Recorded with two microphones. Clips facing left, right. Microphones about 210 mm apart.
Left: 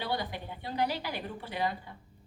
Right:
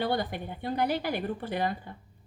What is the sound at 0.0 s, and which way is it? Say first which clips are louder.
A woman's voice: right 5 dB; 50° right (ahead or behind).